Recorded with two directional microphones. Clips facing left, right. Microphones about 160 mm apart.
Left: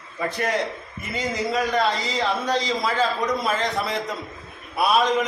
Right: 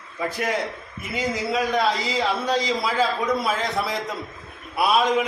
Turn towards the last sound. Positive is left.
turn(degrees=-5)  # may be behind; listen again after turning